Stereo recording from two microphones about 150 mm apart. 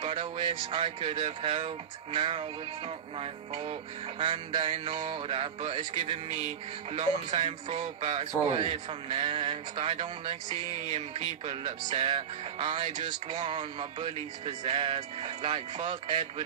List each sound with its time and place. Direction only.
0.0 s music: 35° right (ahead or behind)